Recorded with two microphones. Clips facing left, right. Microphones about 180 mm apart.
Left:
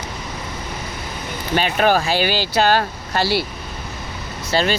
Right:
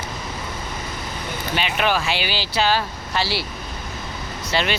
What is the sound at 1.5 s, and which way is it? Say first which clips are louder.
Speech: left 5 dB; 45° left (ahead or behind).